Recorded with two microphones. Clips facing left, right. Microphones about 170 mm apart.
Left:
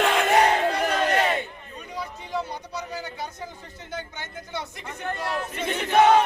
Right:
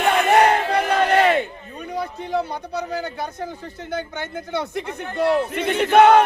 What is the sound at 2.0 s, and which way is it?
A man's voice, 60° right (ahead or behind).